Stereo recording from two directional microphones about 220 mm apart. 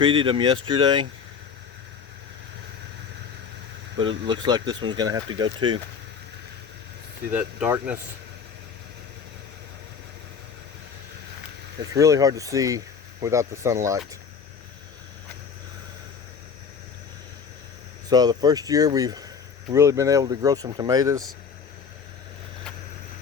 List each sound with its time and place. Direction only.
0.0 s speech: 20° right (ahead or behind)
3.9 s speech: 20° right (ahead or behind)
7.3 s speech: 5° right (ahead or behind)
11.9 s speech: 15° right (ahead or behind)
18.1 s speech: 20° right (ahead or behind)